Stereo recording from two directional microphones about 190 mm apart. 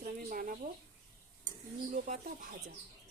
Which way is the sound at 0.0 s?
50° right (ahead or behind).